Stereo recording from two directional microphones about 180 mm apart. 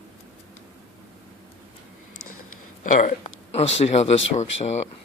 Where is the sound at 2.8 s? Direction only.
45° left (ahead or behind).